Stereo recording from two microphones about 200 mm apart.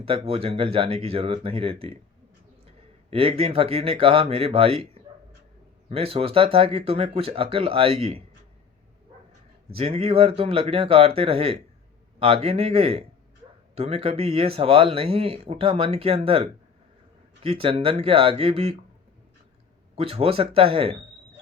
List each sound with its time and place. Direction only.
0.0 s speech: 30° right (ahead or behind)
9.7 s speech: 30° right (ahead or behind)
20.0 s speech: 30° right (ahead or behind)